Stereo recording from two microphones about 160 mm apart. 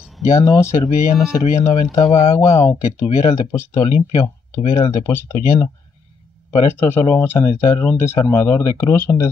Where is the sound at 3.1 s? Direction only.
40° left (ahead or behind).